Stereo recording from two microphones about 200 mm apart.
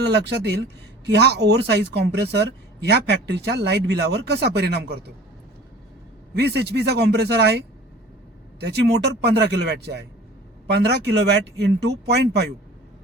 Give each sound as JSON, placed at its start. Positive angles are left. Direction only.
{"t": 0.0, "sound": "speech", "side_deg": -55}
{"t": 6.3, "sound": "speech", "side_deg": -55}
{"t": 8.6, "sound": "speech", "side_deg": -55}